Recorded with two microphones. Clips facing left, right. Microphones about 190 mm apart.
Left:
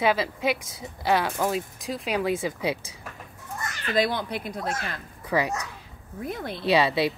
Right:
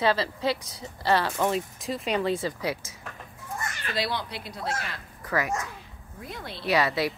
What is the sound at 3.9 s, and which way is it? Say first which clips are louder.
Speech: left 6 dB; 50° left (ahead or behind).